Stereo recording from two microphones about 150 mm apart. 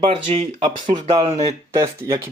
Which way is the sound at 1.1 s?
25° right (ahead or behind).